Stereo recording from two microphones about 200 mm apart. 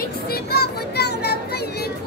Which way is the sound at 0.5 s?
55° left (ahead or behind).